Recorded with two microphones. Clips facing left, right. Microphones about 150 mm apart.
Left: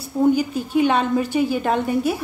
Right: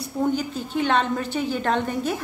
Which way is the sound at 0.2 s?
10° left (ahead or behind).